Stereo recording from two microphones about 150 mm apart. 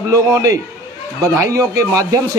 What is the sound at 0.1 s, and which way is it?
Speech, 20° right (ahead or behind).